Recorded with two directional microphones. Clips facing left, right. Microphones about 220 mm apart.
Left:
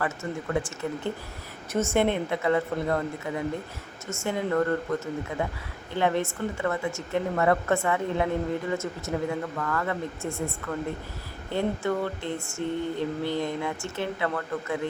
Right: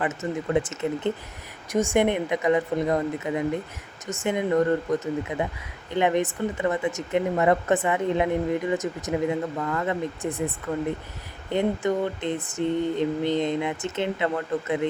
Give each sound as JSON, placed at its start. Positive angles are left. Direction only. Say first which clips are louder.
{"t": 0.0, "sound": "mantra", "louder": "right 3 dB", "side_deg": -20}
{"t": 1.7, "sound": "speech", "louder": "right 2 dB", "side_deg": -15}
{"t": 11.5, "sound": "mantra", "louder": "right 3 dB", "side_deg": -20}